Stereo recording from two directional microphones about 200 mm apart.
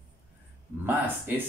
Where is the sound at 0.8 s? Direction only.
10° right (ahead or behind).